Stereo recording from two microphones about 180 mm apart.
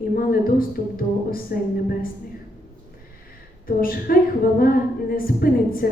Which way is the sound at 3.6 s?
55° left (ahead or behind).